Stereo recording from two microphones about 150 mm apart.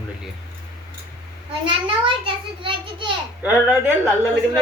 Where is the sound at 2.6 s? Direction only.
35° right (ahead or behind).